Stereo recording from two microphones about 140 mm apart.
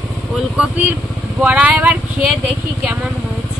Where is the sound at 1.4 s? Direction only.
10° right (ahead or behind).